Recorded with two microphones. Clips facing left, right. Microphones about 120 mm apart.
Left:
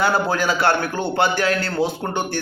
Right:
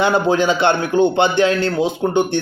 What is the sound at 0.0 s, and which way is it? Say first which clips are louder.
A man's voice: right 4 dB; 20° right (ahead or behind).